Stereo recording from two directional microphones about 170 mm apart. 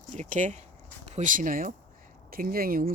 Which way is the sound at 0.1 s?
45° right (ahead or behind).